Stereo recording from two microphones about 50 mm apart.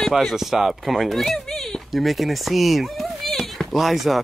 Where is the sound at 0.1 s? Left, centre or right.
Centre.